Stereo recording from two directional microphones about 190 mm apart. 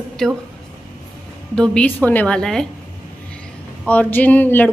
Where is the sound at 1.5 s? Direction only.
5° left (ahead or behind).